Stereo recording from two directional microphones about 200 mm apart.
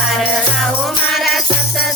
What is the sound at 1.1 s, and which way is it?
Music, centre (ahead or behind).